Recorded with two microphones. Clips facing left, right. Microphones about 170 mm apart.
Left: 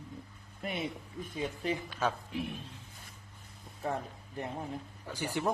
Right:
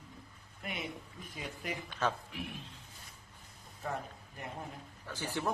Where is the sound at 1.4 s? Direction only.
30° left (ahead or behind).